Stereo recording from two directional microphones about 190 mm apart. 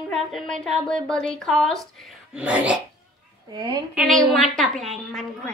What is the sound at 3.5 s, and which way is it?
Speech, 20° right (ahead or behind).